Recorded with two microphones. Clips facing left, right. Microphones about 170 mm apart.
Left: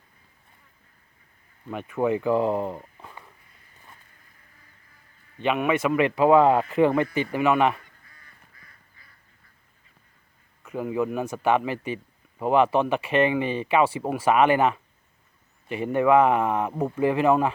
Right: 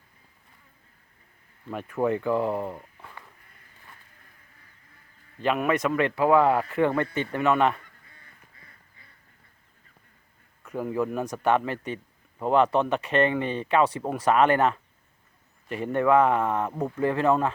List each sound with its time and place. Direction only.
1.7 s speech: centre (ahead or behind)
5.4 s speech: centre (ahead or behind)
8.1 s duck: 25° right (ahead or behind)
10.6 s speech: 5° left (ahead or behind)